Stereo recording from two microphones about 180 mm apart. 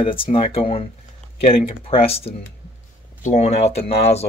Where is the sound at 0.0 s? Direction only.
30° left (ahead or behind).